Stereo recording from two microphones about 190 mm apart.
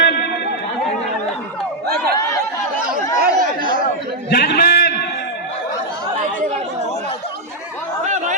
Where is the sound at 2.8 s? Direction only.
50° right (ahead or behind).